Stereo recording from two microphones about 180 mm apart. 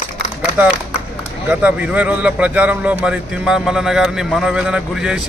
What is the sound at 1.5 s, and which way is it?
A man's voice, 10° right (ahead or behind).